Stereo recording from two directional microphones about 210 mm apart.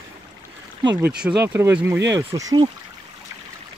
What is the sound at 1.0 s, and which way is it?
Speech, 5° right (ahead or behind).